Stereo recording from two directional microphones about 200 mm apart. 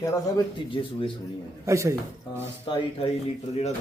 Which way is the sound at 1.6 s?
15° right (ahead or behind).